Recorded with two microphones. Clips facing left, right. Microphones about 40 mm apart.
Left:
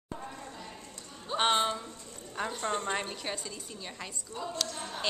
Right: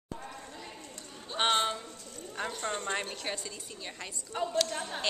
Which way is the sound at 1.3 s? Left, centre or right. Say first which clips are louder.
Left 1 dB; centre.